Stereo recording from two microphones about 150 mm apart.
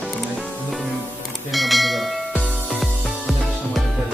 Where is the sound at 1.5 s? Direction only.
Centre (ahead or behind).